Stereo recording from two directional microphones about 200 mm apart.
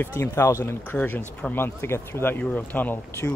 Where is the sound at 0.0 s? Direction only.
10° left (ahead or behind).